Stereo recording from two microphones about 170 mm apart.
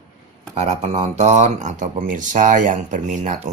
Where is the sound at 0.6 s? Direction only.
40° right (ahead or behind).